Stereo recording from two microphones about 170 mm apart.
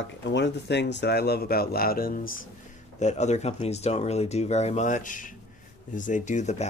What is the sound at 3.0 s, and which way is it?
Speech, 40° left (ahead or behind).